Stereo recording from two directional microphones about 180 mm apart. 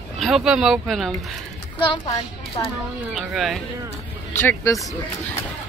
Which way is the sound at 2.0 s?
30° left (ahead or behind).